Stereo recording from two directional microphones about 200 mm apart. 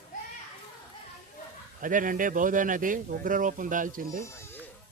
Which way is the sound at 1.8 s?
40° right (ahead or behind).